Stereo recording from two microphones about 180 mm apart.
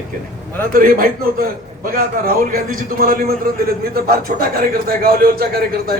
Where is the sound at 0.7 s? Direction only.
50° right (ahead or behind).